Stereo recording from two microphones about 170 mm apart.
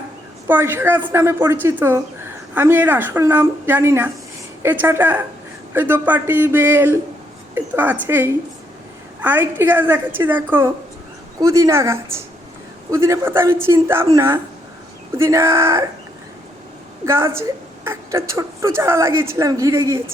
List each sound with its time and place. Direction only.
0.4 s a woman's voice: 10° right (ahead or behind)
17.1 s a woman's voice: 15° right (ahead or behind)